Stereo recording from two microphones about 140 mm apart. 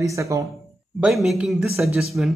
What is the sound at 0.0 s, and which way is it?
Speech, 20° right (ahead or behind).